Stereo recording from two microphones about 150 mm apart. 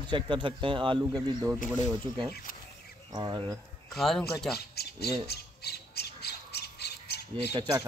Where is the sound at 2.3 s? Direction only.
70° left (ahead or behind).